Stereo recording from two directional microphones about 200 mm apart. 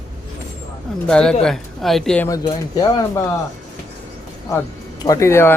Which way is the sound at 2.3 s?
20° left (ahead or behind).